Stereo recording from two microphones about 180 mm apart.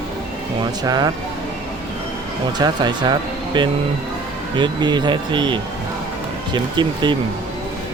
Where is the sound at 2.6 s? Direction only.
25° right (ahead or behind).